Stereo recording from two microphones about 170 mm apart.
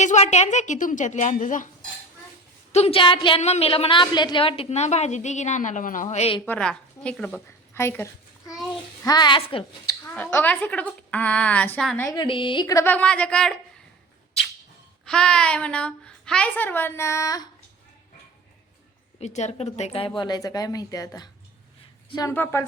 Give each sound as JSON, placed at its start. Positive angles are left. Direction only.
{"t": 0.0, "sound": "a woman's voice", "side_deg": 45}
{"t": 2.7, "sound": "a woman's voice", "side_deg": 35}
{"t": 6.4, "sound": "a woman's voice", "side_deg": 5}
{"t": 9.8, "sound": "a woman's voice", "side_deg": 10}
{"t": 12.0, "sound": "a woman's voice", "side_deg": 25}
{"t": 15.0, "sound": "a woman's voice", "side_deg": 5}
{"t": 19.2, "sound": "speech", "side_deg": 40}
{"t": 22.3, "sound": "a woman's voice", "side_deg": 15}